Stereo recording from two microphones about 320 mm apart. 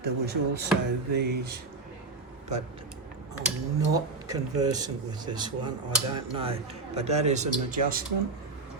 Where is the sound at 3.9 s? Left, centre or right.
Centre.